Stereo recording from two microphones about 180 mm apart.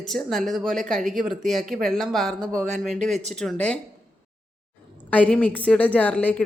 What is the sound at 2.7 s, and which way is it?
Speech, 40° right (ahead or behind).